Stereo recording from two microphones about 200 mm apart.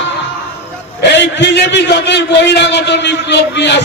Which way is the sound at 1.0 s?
60° left (ahead or behind).